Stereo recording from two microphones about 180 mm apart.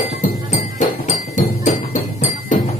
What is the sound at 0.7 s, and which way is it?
Music, 45° left (ahead or behind).